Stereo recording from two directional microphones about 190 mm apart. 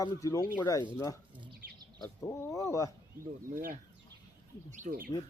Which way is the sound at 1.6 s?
45° right (ahead or behind).